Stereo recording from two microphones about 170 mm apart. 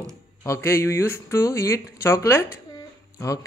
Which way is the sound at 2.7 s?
20° left (ahead or behind).